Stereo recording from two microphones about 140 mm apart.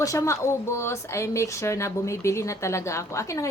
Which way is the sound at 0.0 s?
20° left (ahead or behind).